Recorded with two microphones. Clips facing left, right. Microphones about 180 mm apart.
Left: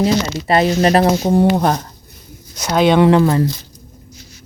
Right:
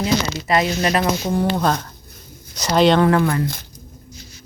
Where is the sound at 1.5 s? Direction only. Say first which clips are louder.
Left 3 dB; 15° left (ahead or behind).